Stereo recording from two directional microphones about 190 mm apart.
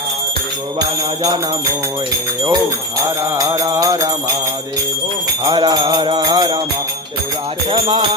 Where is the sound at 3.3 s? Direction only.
15° right (ahead or behind).